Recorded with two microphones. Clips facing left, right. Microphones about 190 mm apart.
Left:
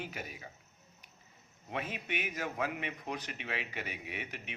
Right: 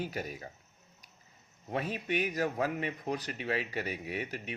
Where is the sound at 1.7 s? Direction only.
35° right (ahead or behind).